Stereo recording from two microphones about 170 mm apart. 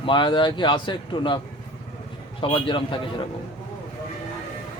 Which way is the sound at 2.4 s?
30° left (ahead or behind).